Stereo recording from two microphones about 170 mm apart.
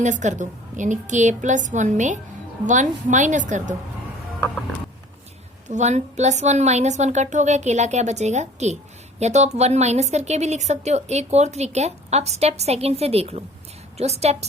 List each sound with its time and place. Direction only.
0.0 s a woman's voice: 45° right (ahead or behind)
4.4 s mechanisms: 10° left (ahead or behind)
5.6 s a woman's voice: 45° right (ahead or behind)